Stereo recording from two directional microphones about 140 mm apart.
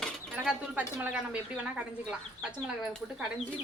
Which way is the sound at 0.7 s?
10° right (ahead or behind).